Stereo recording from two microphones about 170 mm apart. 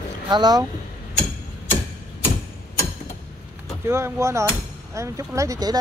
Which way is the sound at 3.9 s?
15° right (ahead or behind).